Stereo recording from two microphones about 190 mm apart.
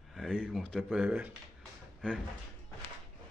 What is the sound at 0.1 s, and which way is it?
A man's voice, centre (ahead or behind).